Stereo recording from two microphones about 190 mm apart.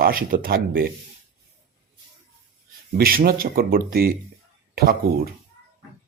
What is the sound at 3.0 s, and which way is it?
Speech, 50° right (ahead or behind).